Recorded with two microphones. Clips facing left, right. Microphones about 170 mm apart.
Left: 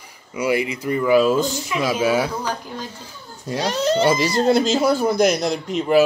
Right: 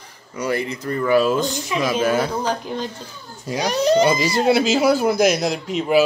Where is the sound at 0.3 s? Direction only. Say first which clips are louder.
Left 2 dB; 10° left (ahead or behind).